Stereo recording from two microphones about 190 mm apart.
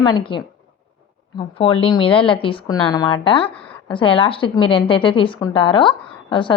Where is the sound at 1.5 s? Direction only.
30° left (ahead or behind).